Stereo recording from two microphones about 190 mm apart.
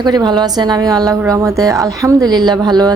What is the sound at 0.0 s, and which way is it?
A woman's voice, 20° right (ahead or behind).